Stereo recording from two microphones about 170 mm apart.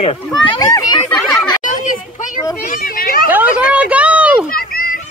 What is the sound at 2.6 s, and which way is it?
Speech, 55° left (ahead or behind).